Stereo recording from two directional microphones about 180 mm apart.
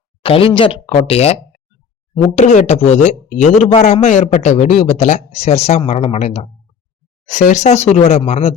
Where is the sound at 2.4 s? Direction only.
40° left (ahead or behind).